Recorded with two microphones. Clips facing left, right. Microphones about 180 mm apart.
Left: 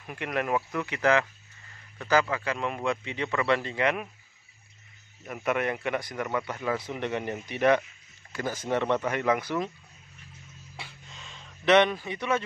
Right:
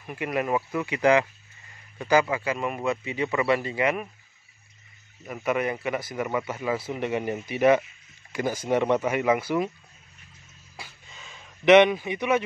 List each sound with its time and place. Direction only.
0.0 s speech: 10° right (ahead or behind)
5.2 s speech: centre (ahead or behind)
10.8 s a sound: centre (ahead or behind)
11.6 s speech: 15° right (ahead or behind)